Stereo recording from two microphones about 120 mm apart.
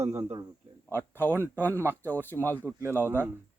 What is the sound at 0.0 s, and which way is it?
Speech, 20° right (ahead or behind).